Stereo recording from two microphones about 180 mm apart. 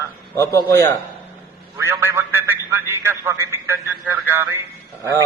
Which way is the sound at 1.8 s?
10° right (ahead or behind).